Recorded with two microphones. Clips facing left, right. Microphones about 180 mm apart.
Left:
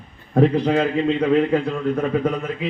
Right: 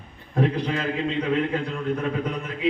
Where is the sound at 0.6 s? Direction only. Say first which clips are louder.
Left 7 dB; 55° left (ahead or behind).